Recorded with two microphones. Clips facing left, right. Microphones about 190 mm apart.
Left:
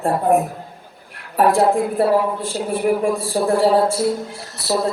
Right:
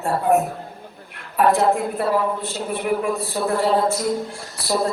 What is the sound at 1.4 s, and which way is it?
A man's voice, 35° left (ahead or behind).